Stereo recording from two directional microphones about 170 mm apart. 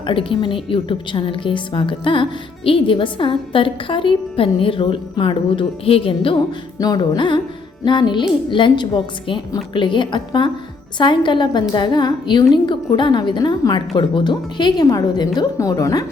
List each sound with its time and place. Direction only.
0.0 s a woman's voice: 30° left (ahead or behind)
6.7 s a woman's voice: 20° left (ahead or behind)